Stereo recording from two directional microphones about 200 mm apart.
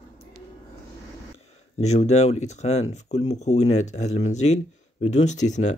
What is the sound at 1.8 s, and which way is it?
Speech, 35° left (ahead or behind).